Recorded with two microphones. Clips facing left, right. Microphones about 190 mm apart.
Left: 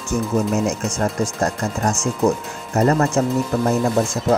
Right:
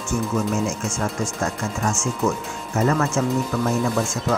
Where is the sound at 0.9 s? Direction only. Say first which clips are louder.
Left 4 dB; 40° left (ahead or behind).